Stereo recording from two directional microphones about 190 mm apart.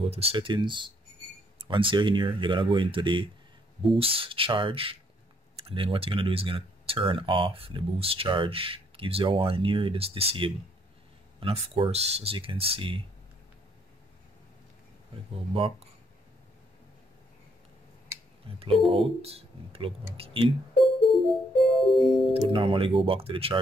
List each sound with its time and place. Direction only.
0.0 s speech: 30° right (ahead or behind)
18.9 s speech: 30° right (ahead or behind)
20.8 s music: centre (ahead or behind)
22.5 s speech: 30° right (ahead or behind)